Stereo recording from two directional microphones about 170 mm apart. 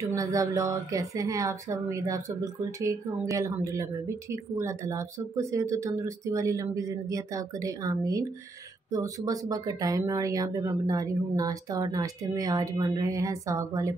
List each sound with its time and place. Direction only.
0.0 s a woman's voice: 20° right (ahead or behind)